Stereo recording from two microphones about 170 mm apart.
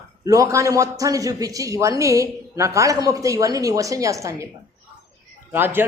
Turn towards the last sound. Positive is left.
turn(degrees=-10)  # may be behind; listen again after turning